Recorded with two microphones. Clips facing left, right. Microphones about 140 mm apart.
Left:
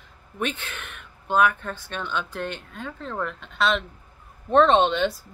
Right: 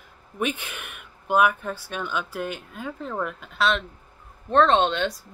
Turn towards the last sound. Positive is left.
turn(degrees=0)  # may be behind; listen again after turning